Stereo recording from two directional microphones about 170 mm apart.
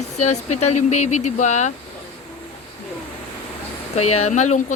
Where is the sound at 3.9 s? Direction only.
40° left (ahead or behind).